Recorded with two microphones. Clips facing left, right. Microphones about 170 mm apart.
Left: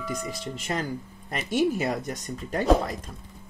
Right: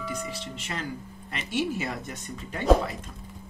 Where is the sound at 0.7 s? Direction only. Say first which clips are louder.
Left 5 dB; 35° left (ahead or behind).